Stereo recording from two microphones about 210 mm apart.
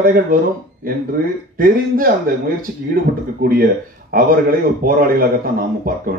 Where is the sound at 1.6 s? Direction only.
45° right (ahead or behind).